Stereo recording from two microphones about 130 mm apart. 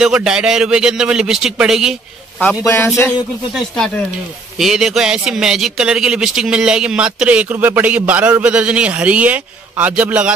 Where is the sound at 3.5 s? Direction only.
5° left (ahead or behind).